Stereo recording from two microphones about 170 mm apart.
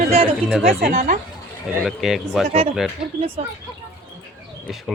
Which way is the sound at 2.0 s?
Centre (ahead or behind).